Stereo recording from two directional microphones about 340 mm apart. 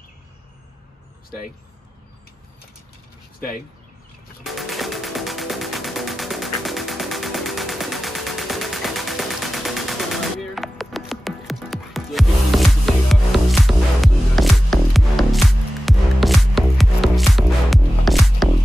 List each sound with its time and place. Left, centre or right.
3.3 s speech: left
4.5 s music: centre